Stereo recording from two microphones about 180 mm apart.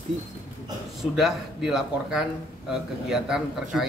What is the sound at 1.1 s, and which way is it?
A man's voice, centre (ahead or behind).